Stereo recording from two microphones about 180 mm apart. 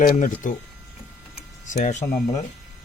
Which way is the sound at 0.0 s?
45° left (ahead or behind).